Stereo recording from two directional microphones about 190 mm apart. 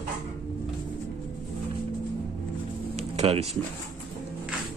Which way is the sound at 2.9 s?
30° right (ahead or behind).